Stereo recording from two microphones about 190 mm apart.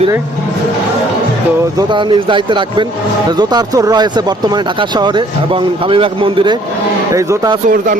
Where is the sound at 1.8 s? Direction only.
25° right (ahead or behind).